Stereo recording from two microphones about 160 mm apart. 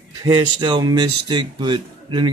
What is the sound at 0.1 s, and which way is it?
Speech, 25° right (ahead or behind).